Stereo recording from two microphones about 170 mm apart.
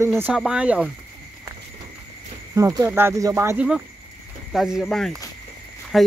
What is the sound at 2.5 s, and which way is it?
Speech, 20° right (ahead or behind).